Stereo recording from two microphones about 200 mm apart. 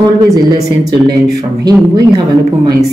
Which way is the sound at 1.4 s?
20° right (ahead or behind).